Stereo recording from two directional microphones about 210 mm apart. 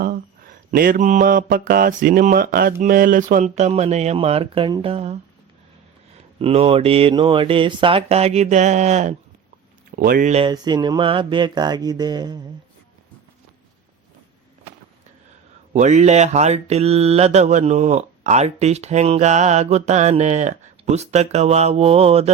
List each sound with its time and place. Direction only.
0.0 s mantra: 45° right (ahead or behind); by 5.1 s 25° right (ahead or behind)
6.4 s speech: 25° right (ahead or behind)
9.9 s mantra: 40° right (ahead or behind)
10.5 s speech: 20° right (ahead or behind)
15.7 s mantra: 35° right (ahead or behind)